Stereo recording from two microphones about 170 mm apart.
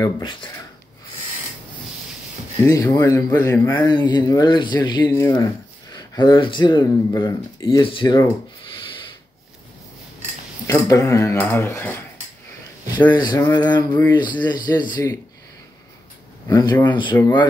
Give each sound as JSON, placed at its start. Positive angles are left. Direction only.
{"t": 0.0, "sound": "speech", "side_deg": 25}
{"t": 2.6, "sound": "speech", "side_deg": 20}
{"t": 3.8, "sound": "speech", "side_deg": 25}
{"t": 10.7, "sound": "speech", "side_deg": 20}
{"t": 13.1, "sound": "speech", "side_deg": 25}
{"t": 16.4, "sound": "speech", "side_deg": 20}
{"t": 17.1, "sound": "speech", "side_deg": 10}